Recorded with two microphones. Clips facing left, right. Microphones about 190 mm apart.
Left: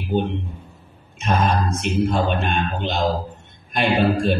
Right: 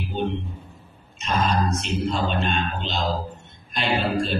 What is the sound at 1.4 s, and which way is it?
Speech, 55° left (ahead or behind).